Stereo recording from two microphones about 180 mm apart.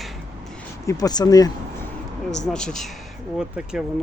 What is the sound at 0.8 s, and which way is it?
Speech, 20° left (ahead or behind).